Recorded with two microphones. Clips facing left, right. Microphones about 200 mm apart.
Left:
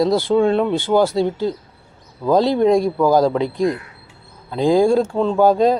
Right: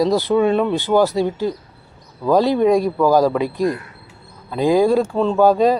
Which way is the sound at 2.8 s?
15° left (ahead or behind).